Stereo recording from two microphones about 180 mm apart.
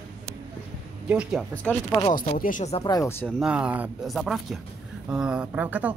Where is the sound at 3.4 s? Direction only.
5° right (ahead or behind).